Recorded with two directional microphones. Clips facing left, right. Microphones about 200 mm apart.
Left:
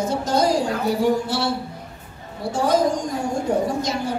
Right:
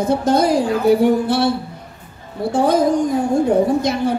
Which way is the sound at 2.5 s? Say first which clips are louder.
Right 4 dB; 55° right (ahead or behind).